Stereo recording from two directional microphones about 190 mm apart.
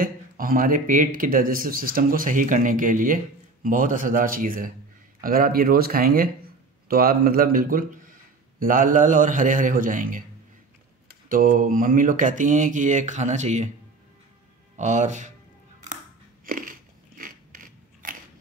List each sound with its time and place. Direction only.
0.0 s a man's voice: 45° right (ahead or behind)
11.2 s a man's voice: 45° right (ahead or behind)
14.8 s speech: 40° right (ahead or behind)
16.4 s biting: 45° right (ahead or behind)
17.2 s a sound: 45° right (ahead or behind)